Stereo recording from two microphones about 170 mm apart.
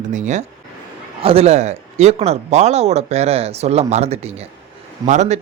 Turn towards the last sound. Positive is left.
turn(degrees=-45)  # may be behind; listen again after turning